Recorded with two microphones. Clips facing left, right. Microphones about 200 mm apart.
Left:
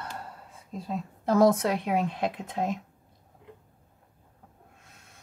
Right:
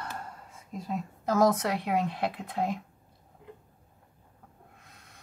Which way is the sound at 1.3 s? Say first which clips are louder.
Left 3 dB; 25° left (ahead or behind).